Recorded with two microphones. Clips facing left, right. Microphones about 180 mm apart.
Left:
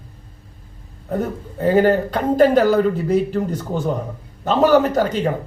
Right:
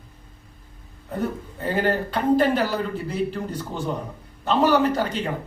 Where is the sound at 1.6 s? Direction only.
45° left (ahead or behind).